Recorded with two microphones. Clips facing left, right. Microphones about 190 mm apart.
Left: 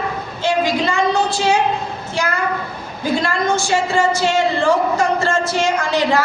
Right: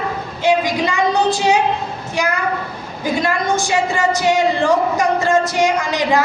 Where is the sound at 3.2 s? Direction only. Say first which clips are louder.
Even; 15° right (ahead or behind).